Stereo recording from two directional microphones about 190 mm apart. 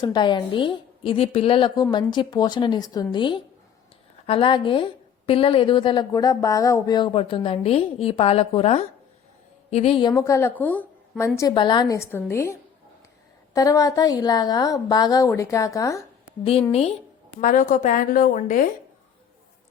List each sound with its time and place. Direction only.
0.0 s a woman's voice: 25° left (ahead or behind); by 11.3 s 5° left (ahead or behind)
11.3 s a woman's voice: 20° left (ahead or behind)
16.4 s a woman's voice: 30° left (ahead or behind)
17.4 s a woman's voice: 45° left (ahead or behind)